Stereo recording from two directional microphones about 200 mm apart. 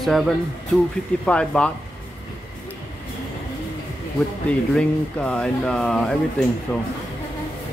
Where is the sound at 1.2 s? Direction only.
5° left (ahead or behind).